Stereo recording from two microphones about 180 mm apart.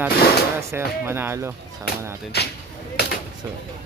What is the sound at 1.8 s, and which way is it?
Speech, 65° left (ahead or behind).